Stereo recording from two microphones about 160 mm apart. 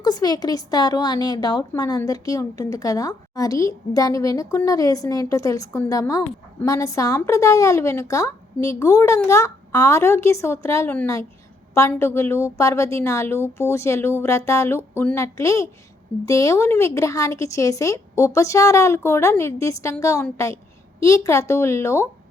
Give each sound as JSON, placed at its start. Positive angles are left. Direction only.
{"t": 0.0, "sound": "a woman's voice", "side_deg": 25}